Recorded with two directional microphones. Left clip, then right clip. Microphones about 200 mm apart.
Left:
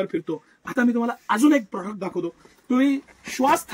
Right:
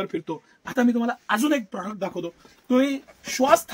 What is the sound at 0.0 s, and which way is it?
A man's voice, 15° right (ahead or behind).